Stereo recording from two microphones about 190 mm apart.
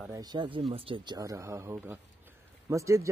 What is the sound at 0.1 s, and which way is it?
Speech, 20° right (ahead or behind).